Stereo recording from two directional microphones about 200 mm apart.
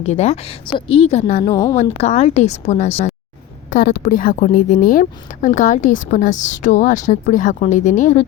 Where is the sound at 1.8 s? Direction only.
35° left (ahead or behind).